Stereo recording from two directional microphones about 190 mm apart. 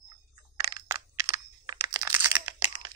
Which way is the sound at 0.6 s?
20° right (ahead or behind).